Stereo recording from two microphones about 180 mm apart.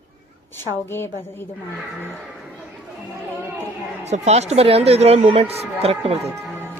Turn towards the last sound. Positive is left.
turn(degrees=-35)  # may be behind; listen again after turning